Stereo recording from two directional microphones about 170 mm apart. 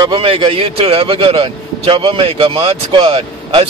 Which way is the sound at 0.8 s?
35° right (ahead or behind).